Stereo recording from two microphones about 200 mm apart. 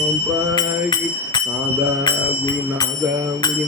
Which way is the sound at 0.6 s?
20° left (ahead or behind).